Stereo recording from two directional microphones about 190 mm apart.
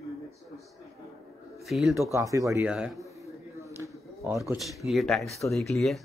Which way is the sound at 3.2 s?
15° right (ahead or behind).